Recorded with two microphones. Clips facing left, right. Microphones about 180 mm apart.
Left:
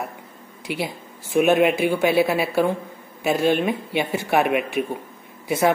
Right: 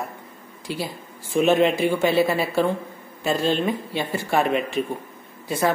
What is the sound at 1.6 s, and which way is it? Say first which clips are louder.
Speech: left 1 dB; 60° left (ahead or behind).